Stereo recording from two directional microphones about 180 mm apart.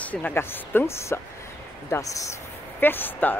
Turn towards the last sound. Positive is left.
turn(degrees=10)  # may be behind; listen again after turning